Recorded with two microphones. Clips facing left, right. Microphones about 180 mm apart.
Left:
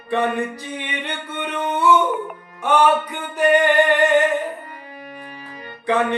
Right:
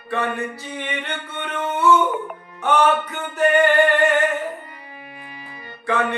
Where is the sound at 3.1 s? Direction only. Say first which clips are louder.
Left 2 dB; 15° left (ahead or behind).